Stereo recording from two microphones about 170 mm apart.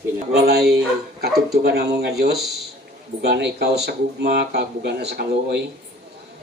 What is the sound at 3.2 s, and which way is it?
Speech, 75° right (ahead or behind).